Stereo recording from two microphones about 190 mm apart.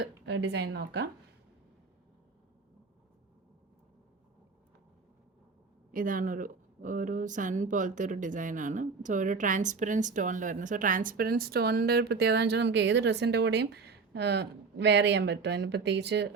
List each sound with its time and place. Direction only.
0.0 s speech: 60° right (ahead or behind)
5.9 s speech: 45° right (ahead or behind); by 16.3 s 60° right (ahead or behind)